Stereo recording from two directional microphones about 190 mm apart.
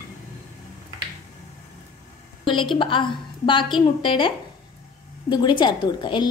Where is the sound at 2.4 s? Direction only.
25° left (ahead or behind).